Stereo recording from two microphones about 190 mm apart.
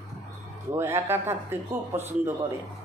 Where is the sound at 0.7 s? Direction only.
15° right (ahead or behind).